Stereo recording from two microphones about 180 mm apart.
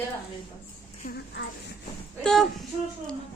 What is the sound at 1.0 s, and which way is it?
Speech, 55° left (ahead or behind).